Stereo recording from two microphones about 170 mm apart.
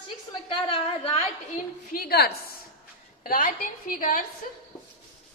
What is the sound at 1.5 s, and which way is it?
A woman's voice, 55° left (ahead or behind).